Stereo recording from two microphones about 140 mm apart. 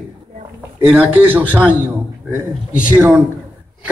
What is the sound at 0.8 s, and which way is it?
Speech, 10° right (ahead or behind).